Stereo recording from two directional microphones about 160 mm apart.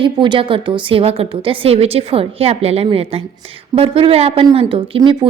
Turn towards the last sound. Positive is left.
turn(degrees=-35)  # may be behind; listen again after turning